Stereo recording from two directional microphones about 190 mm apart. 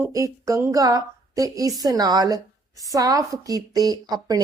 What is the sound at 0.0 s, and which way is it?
A woman's voice, 15° right (ahead or behind).